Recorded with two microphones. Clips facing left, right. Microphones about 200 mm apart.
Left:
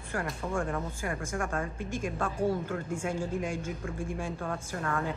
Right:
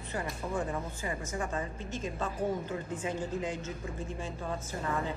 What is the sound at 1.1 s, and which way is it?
Speech, 80° left.